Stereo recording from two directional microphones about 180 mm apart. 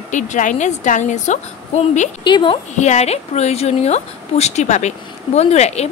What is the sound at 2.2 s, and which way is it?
A woman's voice, 25° left (ahead or behind).